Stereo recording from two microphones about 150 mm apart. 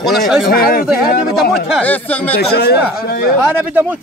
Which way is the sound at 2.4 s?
90° left.